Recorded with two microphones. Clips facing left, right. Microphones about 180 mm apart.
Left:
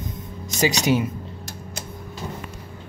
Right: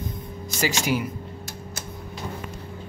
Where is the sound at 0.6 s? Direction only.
20° left (ahead or behind).